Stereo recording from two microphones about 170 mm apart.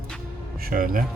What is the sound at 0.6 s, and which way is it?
Speech, 55° right (ahead or behind).